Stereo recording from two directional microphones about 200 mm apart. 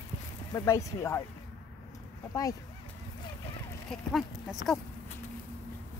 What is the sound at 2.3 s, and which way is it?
Speech, 15° left (ahead or behind).